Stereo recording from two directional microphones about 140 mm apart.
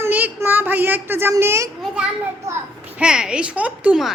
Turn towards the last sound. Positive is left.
turn(degrees=-5)  # may be behind; listen again after turning